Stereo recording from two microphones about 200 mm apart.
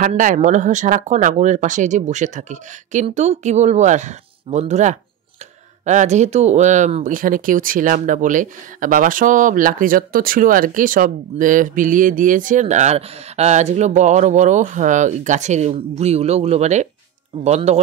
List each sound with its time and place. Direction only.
0.0 s speech: 40° right (ahead or behind)